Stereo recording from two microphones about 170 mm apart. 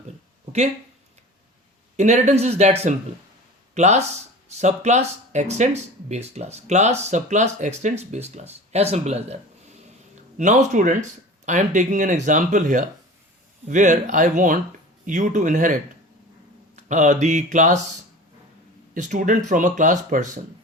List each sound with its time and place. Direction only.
2.0 s speech: 45° right (ahead or behind)
3.8 s speech: 40° right (ahead or behind)
18.9 s speech: 45° right (ahead or behind)